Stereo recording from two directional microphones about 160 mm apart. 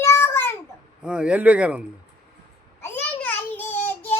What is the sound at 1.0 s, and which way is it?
Speech, 5° right (ahead or behind).